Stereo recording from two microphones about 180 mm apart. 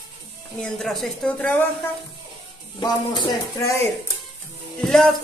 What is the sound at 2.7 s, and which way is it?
Speech, 25° left (ahead or behind).